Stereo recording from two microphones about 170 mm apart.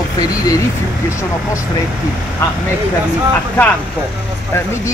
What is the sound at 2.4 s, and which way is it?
Speech, 15° left (ahead or behind).